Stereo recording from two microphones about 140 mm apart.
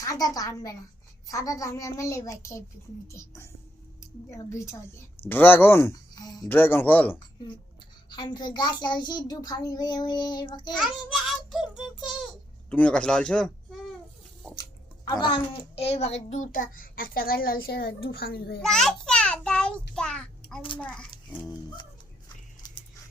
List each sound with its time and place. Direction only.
0.0 s a child's voice: 25° left (ahead or behind)
6.1 s a child's voice: 30° left (ahead or behind)
6.5 s speech: 15° left (ahead or behind)
8.1 s speech: 30° left (ahead or behind)
10.8 s a child's voice: 5° right (ahead or behind)
12.7 s speech: 10° left (ahead or behind)
14.5 s a child's voice: 30° left (ahead or behind); by 18.6 s 90° left
18.6 s a sound: 5° left (ahead or behind)
20.7 s speech: 5° left (ahead or behind)
21.1 s a sound: 30° left (ahead or behind)